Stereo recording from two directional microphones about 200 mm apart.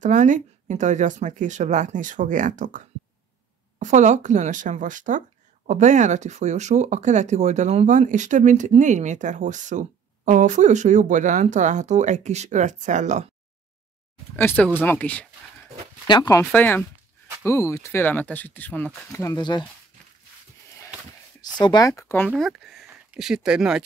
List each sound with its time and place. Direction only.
0.0 s speech: 40° right (ahead or behind)
3.8 s speech: 35° right (ahead or behind)
14.3 s speech: 10° left (ahead or behind)
16.1 s speech: 20° left (ahead or behind)
21.4 s speech: 20° left (ahead or behind)
22.3 s speech: centre (ahead or behind)